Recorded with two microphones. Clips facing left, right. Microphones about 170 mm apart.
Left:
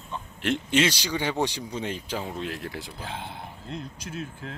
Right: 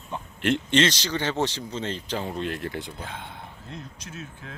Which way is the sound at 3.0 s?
30° left (ahead or behind).